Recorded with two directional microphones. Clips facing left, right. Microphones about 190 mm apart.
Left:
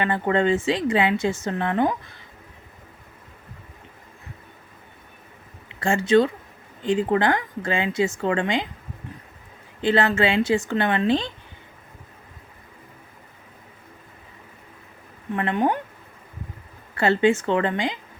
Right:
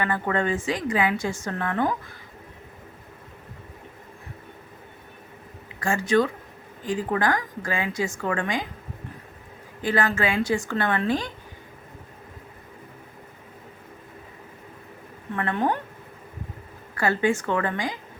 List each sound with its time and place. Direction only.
0.0 s a woman's voice: 25° left (ahead or behind)
5.8 s a woman's voice: 25° left (ahead or behind)
9.8 s a woman's voice: 25° left (ahead or behind)
15.4 s speech: 20° left (ahead or behind)
16.9 s a woman's voice: 25° left (ahead or behind)